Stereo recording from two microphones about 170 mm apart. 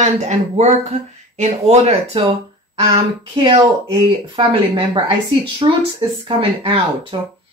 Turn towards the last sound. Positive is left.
turn(degrees=-30)  # may be behind; listen again after turning